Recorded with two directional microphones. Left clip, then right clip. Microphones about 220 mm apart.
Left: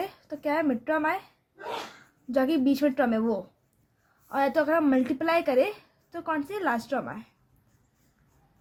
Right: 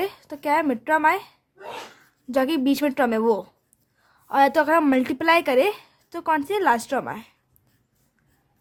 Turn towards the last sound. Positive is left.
turn(degrees=-30)  # may be behind; listen again after turning